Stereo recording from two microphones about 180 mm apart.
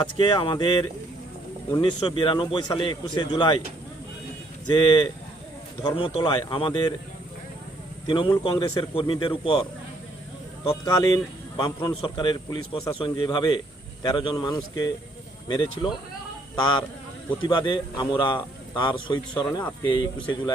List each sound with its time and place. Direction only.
0.0 s a man's voice: 25° left (ahead or behind)
4.7 s a man's voice: 25° left (ahead or behind)
8.0 s a man's voice: 25° left (ahead or behind)
10.7 s a man's voice: 20° left (ahead or behind)